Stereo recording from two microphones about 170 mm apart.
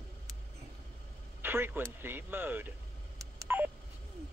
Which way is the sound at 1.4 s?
15° right (ahead or behind).